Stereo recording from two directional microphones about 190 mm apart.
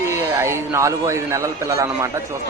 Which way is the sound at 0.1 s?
15° right (ahead or behind).